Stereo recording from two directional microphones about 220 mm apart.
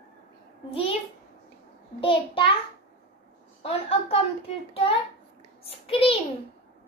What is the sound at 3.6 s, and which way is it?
A child's voice, 25° left (ahead or behind).